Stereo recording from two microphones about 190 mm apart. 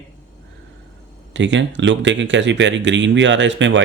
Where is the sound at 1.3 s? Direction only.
70° right (ahead or behind).